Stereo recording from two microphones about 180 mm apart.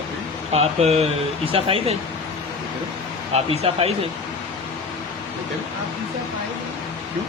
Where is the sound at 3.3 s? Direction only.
35° right (ahead or behind).